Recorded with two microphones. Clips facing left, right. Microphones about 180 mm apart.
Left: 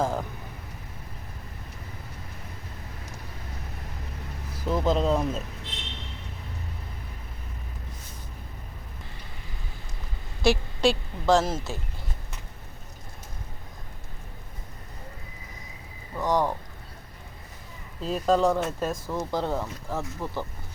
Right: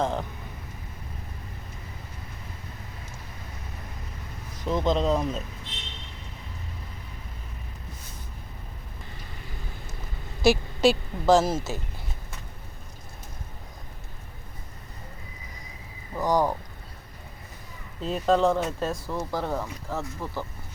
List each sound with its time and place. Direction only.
0.0 s speech: 5° left (ahead or behind)
4.6 s speech: 5° left (ahead or behind)
10.4 s speech: 5° right (ahead or behind)
16.2 s speech: centre (ahead or behind)
18.0 s speech: centre (ahead or behind)
19.0 s speech: 20° left (ahead or behind)